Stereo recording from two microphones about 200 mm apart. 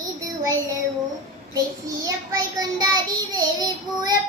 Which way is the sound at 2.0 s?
20° right (ahead or behind).